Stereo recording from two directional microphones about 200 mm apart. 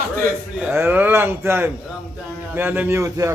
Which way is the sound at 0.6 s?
10° right (ahead or behind).